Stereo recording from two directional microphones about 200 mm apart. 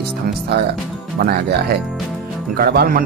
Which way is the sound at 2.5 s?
50° right (ahead or behind).